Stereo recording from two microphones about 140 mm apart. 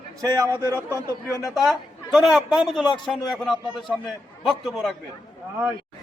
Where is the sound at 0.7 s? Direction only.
20° left (ahead or behind).